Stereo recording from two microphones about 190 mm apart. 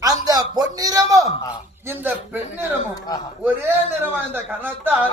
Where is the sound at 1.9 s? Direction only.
10° right (ahead or behind).